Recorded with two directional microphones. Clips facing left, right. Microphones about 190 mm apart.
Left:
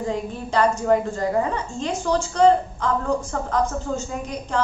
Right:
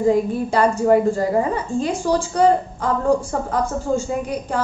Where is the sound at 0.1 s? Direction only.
10° right (ahead or behind).